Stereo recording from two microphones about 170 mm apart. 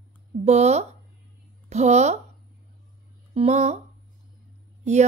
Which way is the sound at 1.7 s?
40° right (ahead or behind).